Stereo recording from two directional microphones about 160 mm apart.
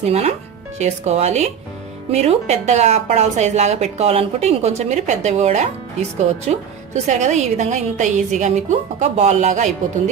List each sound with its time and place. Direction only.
0.0 s speech: 40° right (ahead or behind)